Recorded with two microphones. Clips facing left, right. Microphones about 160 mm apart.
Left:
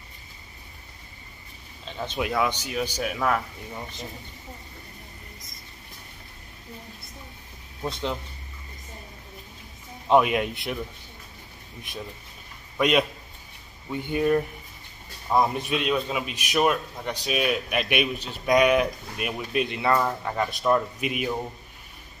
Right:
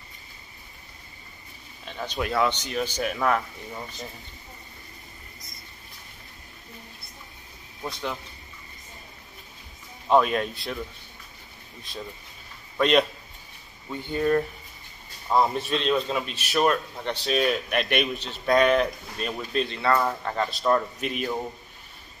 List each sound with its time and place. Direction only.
2.1 s a man's voice: 10° left (ahead or behind)
7.8 s speech: 20° left (ahead or behind)
10.0 s a man's voice: 15° left (ahead or behind)
12.7 s a man's voice: 5° left (ahead or behind)